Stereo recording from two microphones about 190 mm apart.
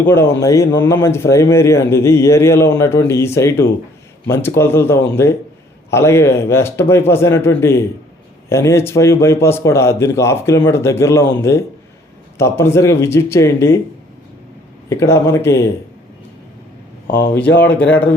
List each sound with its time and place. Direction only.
0.0 s speech: 10° left (ahead or behind)
12.4 s speech: 15° left (ahead or behind)
14.8 s speech: 15° left (ahead or behind)
17.1 s speech: 50° left (ahead or behind)
17.4 s speech: 65° left (ahead or behind)
17.8 s speech: 5° left (ahead or behind)